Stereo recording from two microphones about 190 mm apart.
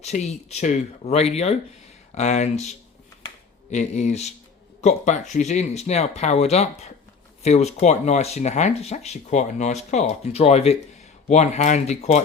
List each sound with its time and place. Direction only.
0.0 s speech: 35° left (ahead or behind)